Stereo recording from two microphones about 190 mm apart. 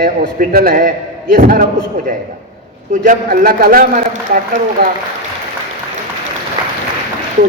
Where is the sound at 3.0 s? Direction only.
45° right (ahead or behind).